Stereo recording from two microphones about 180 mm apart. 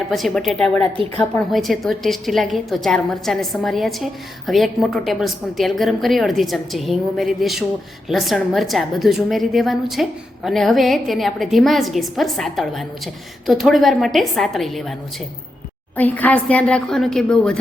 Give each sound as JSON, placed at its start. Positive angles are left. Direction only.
{"t": 0.1, "sound": "a woman's voice", "side_deg": 0}
{"t": 16.0, "sound": "a woman's voice", "side_deg": 10}